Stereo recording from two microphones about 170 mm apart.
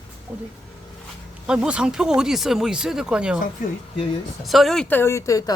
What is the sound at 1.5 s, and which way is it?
A woman's voice, 5° right (ahead or behind).